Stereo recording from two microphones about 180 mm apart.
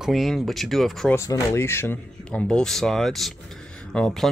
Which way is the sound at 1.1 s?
15° left (ahead or behind).